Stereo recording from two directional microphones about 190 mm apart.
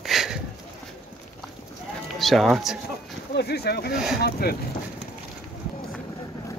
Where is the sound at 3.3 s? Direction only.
55° left (ahead or behind).